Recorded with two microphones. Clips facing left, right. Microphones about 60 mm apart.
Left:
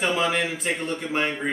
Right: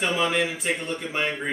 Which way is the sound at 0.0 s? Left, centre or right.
Centre.